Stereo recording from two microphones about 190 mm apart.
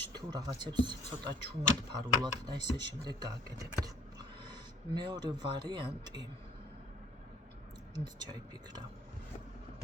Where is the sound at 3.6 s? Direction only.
20° right (ahead or behind).